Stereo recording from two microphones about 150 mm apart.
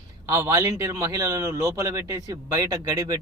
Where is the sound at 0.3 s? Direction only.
20° right (ahead or behind).